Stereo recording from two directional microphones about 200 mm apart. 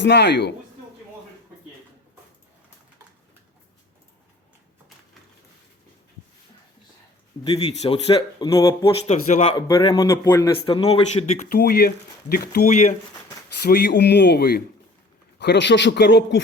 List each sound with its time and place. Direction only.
0.0 s speech: 55° left (ahead or behind)
7.4 s speech: 30° left (ahead or behind); by 8.9 s 15° left (ahead or behind)
9.0 s a man's voice: 30° left (ahead or behind)
9.6 s speech: 20° left (ahead or behind)
10.7 s speech: 30° left (ahead or behind)
11.4 s speech: 50° left (ahead or behind)
13.6 s speech: 50° left (ahead or behind)